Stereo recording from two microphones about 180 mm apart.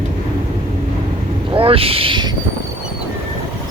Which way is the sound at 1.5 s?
30° right (ahead or behind).